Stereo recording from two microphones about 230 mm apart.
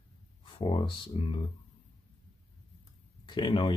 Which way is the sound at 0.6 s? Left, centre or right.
Left.